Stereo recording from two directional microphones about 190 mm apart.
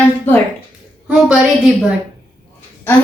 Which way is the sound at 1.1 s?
5° right (ahead or behind).